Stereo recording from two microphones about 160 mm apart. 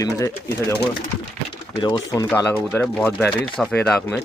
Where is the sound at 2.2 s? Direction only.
10° left (ahead or behind).